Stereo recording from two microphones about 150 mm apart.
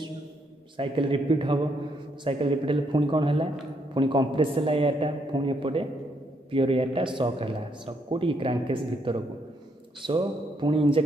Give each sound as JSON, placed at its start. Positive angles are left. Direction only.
{"t": 0.7, "sound": "a man's voice", "side_deg": -35}